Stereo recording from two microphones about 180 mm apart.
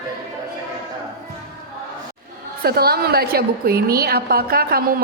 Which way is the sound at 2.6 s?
60° right (ahead or behind).